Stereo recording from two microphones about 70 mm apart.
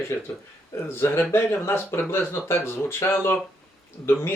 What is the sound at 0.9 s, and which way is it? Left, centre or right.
Speech, left.